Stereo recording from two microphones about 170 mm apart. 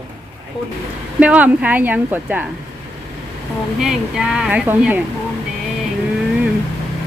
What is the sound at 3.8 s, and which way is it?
Speech, 5° right (ahead or behind).